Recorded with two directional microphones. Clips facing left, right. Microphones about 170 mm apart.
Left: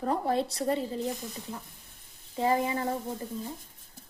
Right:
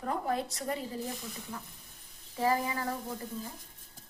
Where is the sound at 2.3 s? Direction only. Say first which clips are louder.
Left 3 dB; 20° left (ahead or behind).